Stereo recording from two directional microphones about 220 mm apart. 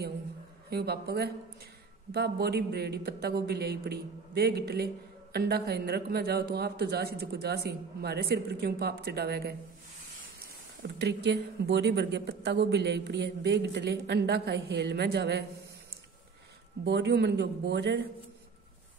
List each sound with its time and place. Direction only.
0.7 s a man's voice: 45° right (ahead or behind)
10.8 s a man's voice: 50° right (ahead or behind)
16.8 s a man's voice: 50° right (ahead or behind)